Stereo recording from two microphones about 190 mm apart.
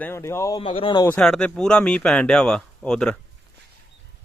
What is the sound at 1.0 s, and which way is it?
Speech, 5° left (ahead or behind).